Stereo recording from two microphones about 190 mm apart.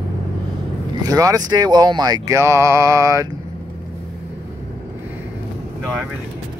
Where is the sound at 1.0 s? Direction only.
20° right (ahead or behind).